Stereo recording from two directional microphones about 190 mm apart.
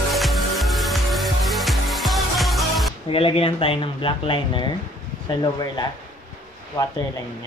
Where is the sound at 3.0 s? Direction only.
30° left (ahead or behind).